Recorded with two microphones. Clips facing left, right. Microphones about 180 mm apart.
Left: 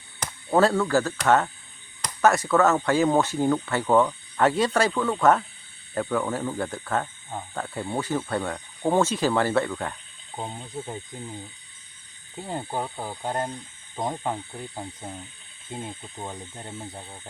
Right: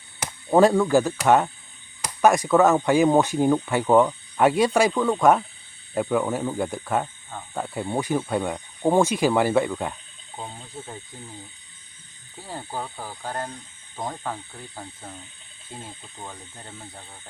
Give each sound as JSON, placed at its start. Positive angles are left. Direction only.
{"t": 0.2, "sound": "speech", "side_deg": -15}
{"t": 10.3, "sound": "speech", "side_deg": 15}
{"t": 12.4, "sound": "speech", "side_deg": 20}